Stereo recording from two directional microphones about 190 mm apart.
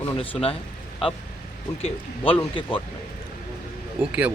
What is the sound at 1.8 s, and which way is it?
Speech, 30° left (ahead or behind).